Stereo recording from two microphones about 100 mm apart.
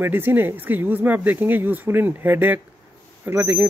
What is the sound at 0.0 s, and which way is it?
Speech, 20° right (ahead or behind).